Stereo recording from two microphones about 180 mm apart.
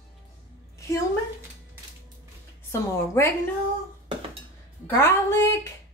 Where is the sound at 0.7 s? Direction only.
15° left (ahead or behind).